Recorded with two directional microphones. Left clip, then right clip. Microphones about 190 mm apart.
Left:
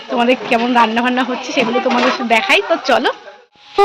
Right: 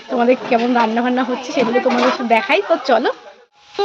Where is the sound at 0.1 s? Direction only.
10° right (ahead or behind).